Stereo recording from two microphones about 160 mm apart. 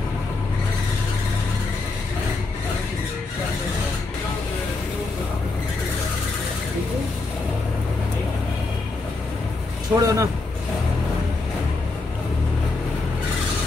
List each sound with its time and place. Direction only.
9.9 s speech: 20° right (ahead or behind)